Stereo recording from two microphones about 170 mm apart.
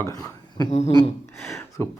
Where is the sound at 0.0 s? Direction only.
20° left (ahead or behind).